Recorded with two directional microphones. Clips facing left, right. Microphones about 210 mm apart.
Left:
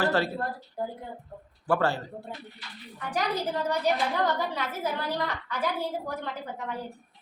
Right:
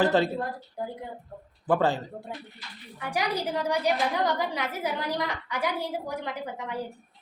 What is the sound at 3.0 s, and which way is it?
A woman's voice, 10° right (ahead or behind).